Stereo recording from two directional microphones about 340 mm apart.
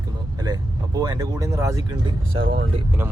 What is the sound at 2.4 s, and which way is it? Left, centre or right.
Speech, right.